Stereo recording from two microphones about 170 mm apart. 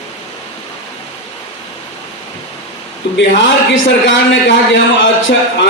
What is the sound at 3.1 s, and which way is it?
A man's voice, 90° left.